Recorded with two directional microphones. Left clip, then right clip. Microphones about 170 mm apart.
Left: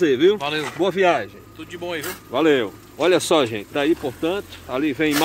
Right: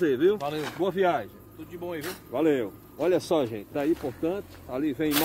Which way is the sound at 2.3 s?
15° left (ahead or behind).